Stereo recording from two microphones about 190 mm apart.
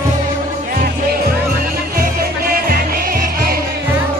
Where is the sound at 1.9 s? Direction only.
50° right (ahead or behind).